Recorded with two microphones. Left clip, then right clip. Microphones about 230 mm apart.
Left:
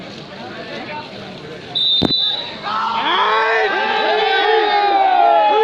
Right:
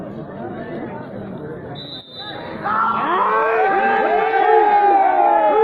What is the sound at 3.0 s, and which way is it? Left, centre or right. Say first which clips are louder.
Crowd: left 2 dB; left.